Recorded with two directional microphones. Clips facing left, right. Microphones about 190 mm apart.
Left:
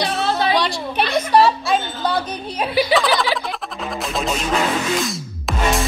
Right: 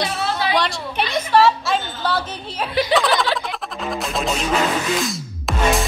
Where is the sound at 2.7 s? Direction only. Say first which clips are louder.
Left 1 dB; 5° left (ahead or behind).